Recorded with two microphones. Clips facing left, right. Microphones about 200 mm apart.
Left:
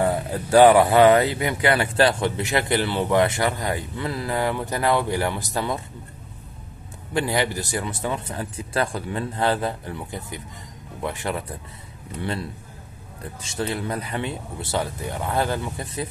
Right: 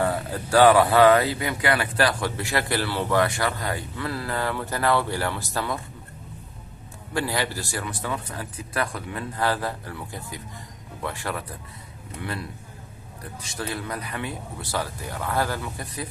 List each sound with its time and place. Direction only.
0.0 s speech: 20° left (ahead or behind)
7.2 s speech: 20° left (ahead or behind)